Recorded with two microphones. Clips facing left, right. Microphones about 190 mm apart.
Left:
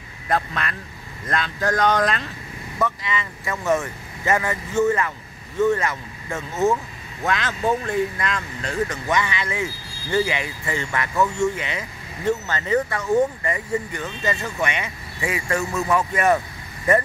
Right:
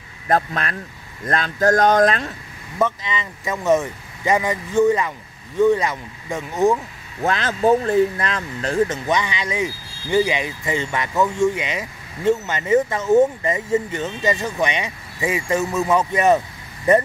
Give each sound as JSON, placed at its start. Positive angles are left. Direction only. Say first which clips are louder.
{"t": 0.3, "sound": "speech", "louder": "right 4 dB", "side_deg": -45}
{"t": 2.8, "sound": "speech", "louder": "right 3 dB", "side_deg": -20}
{"t": 7.2, "sound": "speech", "louder": "right 5 dB", "side_deg": -35}